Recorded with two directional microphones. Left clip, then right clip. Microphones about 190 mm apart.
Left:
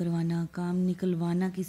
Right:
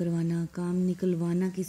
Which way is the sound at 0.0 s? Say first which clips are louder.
Right 1 dB; 5° left (ahead or behind).